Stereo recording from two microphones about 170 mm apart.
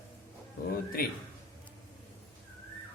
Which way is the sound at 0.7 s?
60° left (ahead or behind).